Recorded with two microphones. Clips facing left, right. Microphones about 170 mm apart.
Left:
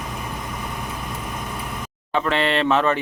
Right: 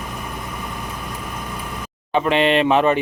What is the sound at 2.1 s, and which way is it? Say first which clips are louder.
Speech: right 4 dB; 15° right (ahead or behind).